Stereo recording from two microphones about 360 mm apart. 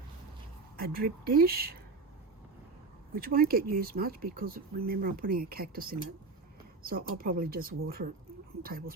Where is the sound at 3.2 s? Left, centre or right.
Right.